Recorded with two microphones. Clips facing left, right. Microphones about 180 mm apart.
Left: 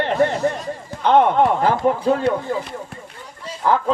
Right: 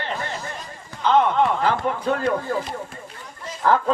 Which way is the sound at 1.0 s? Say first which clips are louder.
Left 4 dB; 55° left (ahead or behind).